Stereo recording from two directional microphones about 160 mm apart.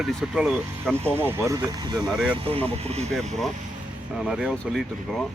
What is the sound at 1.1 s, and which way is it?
Speech, 15° right (ahead or behind).